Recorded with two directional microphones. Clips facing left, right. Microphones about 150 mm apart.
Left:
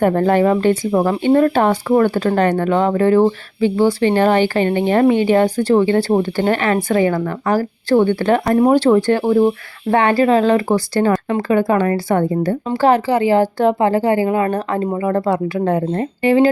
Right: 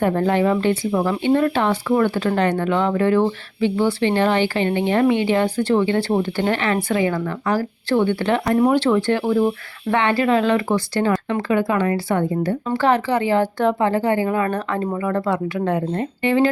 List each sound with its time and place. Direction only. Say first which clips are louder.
0.0 s speech: left 4 dB; 50° left (ahead or behind)